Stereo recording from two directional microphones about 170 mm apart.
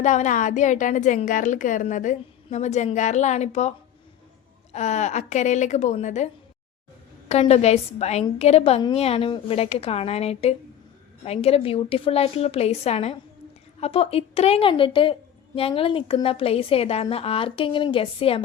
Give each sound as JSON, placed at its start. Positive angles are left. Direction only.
{"t": 0.0, "sound": "a woman's voice", "side_deg": 45}